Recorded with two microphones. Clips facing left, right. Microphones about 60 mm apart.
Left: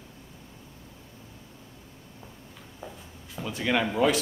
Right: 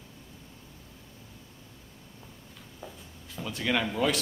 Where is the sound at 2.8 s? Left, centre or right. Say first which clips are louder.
Left 3 dB; centre.